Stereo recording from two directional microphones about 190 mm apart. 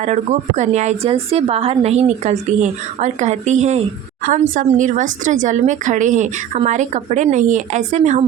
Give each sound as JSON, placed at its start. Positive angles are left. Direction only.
{"t": 0.0, "sound": "a woman's voice", "side_deg": -40}